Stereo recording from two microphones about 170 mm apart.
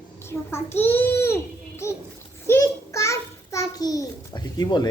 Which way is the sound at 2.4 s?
15° left (ahead or behind).